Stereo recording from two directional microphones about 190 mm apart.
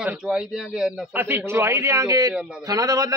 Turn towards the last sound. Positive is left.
turn(degrees=-20)  # may be behind; listen again after turning